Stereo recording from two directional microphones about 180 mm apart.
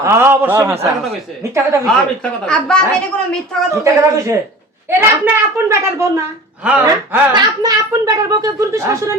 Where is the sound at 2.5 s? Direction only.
5° left (ahead or behind).